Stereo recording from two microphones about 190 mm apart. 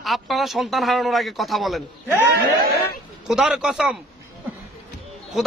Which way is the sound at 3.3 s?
5° right (ahead or behind).